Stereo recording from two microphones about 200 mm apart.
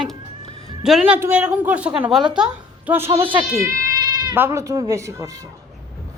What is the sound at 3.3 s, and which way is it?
Cat, 15° right (ahead or behind).